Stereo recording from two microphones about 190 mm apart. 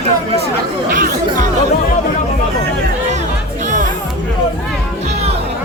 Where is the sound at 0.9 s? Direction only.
45° right (ahead or behind).